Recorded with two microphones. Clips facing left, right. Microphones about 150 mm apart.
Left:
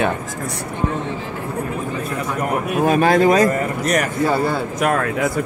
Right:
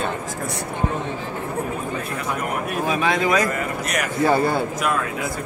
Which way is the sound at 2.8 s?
50° left (ahead or behind).